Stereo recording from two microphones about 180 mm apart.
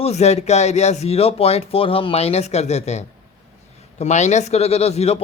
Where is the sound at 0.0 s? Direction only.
35° left (ahead or behind).